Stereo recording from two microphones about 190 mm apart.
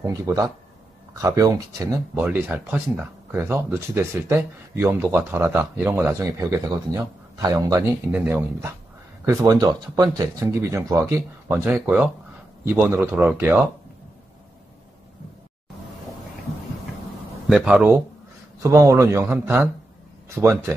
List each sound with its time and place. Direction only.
0.0 s speech: 20° right (ahead or behind)
3.3 s speech: 15° right (ahead or behind)
17.5 s speech: 5° right (ahead or behind)